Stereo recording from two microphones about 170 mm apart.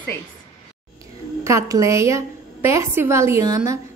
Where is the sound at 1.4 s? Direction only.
15° right (ahead or behind).